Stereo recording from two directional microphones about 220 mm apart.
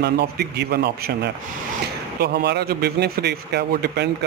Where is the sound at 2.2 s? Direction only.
50° right (ahead or behind).